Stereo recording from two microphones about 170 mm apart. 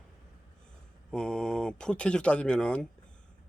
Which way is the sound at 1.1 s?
5° left (ahead or behind).